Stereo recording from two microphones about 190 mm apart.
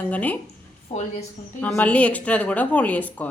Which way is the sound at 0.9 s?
30° left (ahead or behind).